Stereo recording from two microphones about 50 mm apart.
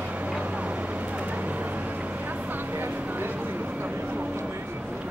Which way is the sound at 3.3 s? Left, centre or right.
Right.